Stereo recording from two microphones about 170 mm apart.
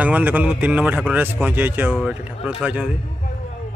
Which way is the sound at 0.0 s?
10° right (ahead or behind).